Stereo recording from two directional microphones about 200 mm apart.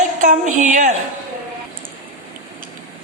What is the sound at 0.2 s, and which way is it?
Speech, 40° right (ahead or behind).